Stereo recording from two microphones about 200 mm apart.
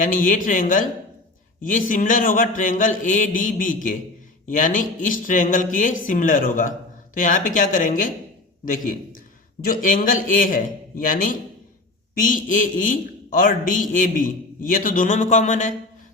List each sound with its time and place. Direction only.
0.0 s a man's voice: 40° left (ahead or behind)